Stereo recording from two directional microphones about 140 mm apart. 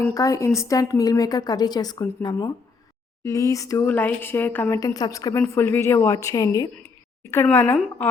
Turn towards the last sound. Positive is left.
turn(degrees=15)  # may be behind; listen again after turning